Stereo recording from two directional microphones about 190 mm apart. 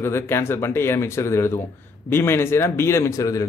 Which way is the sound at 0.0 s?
10° left (ahead or behind).